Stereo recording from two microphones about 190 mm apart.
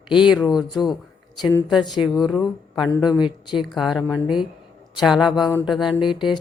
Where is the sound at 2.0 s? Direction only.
Centre (ahead or behind).